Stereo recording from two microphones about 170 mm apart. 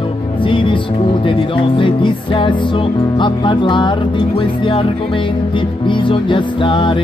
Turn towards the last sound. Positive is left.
turn(degrees=30)  # may be behind; listen again after turning